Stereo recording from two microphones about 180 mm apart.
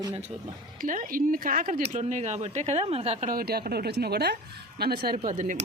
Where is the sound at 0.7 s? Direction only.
50° right (ahead or behind).